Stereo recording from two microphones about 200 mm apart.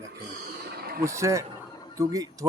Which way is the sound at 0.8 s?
50° right (ahead or behind).